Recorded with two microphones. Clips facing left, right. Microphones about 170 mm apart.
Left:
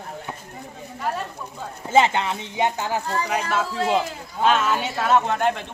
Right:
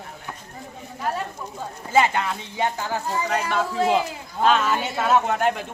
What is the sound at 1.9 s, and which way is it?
Speech, 25° left (ahead or behind).